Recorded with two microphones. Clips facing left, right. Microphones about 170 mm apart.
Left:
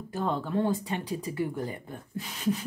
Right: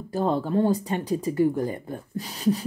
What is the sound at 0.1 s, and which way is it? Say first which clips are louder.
A woman's voice: right 6 dB; 35° right (ahead or behind).